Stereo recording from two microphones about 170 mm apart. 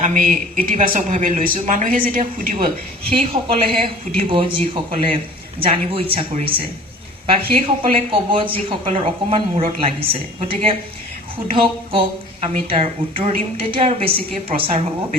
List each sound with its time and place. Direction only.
0.0 s speech: 50° right (ahead or behind)
3.0 s a woman's voice: 30° right (ahead or behind)